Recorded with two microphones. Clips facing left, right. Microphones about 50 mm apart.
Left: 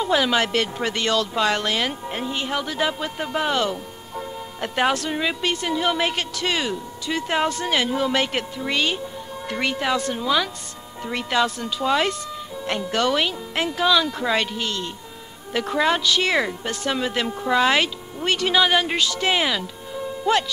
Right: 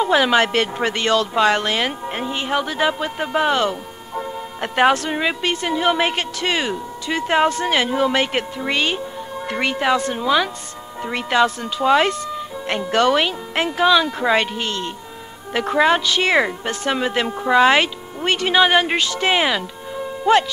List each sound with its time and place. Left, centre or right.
0.0 s a man's voice: right